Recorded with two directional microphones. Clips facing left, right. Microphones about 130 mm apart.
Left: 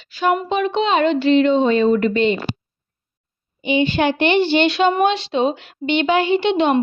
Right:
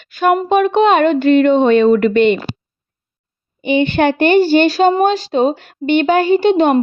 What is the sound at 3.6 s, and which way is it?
A woman's voice, 55° right (ahead or behind).